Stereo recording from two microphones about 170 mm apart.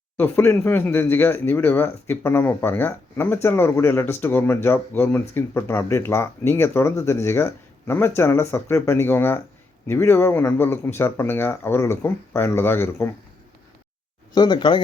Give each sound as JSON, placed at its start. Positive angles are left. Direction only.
{"t": 0.2, "sound": "speech", "side_deg": 10}
{"t": 14.3, "sound": "speech", "side_deg": 25}